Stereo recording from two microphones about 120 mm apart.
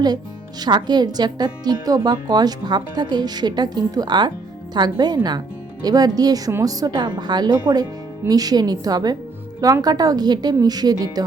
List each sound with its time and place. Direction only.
0.6 s speech: 35° right (ahead or behind)